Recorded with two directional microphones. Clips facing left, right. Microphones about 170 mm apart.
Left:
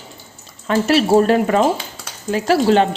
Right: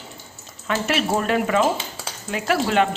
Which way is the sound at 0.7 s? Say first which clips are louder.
Left 8 dB; 35° left (ahead or behind).